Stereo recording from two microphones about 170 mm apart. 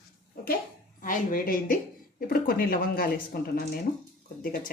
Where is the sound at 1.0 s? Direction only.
55° left (ahead or behind).